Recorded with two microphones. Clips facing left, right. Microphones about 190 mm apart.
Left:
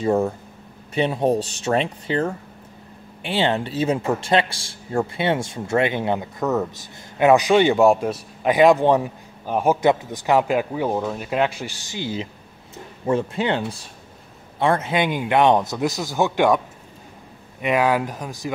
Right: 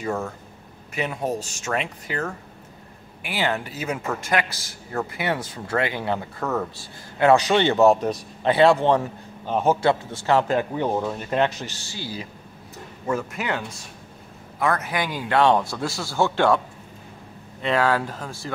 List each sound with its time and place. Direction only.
0.0 s a man's voice: 30° left (ahead or behind); by 18.5 s 15° left (ahead or behind)